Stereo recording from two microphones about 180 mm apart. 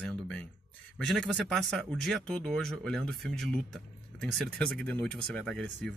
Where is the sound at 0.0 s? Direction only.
5° left (ahead or behind).